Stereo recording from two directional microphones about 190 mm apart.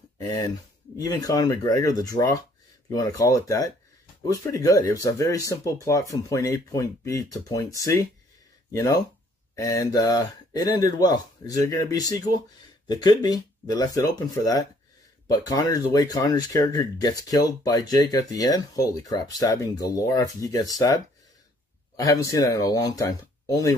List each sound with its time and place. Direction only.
0.2 s speech: 15° left (ahead or behind)